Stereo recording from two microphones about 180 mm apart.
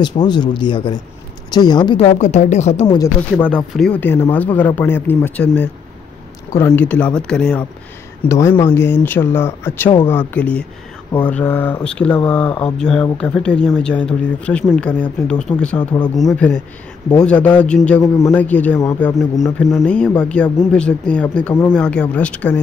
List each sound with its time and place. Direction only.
0.0 s speech: 25° left (ahead or behind)
2.0 s speech: 40° left (ahead or behind)
3.3 s speech: 5° left (ahead or behind)
8.3 s speech: 15° left (ahead or behind)